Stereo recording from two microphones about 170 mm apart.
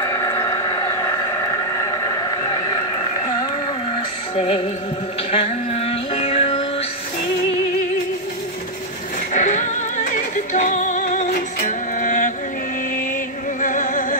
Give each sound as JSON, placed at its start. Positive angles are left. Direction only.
{"t": 0.0, "sound": "vehicle", "side_deg": 15}
{"t": 4.4, "sound": "music", "side_deg": 35}
{"t": 9.3, "sound": "music", "side_deg": 45}
{"t": 13.6, "sound": "music", "side_deg": 50}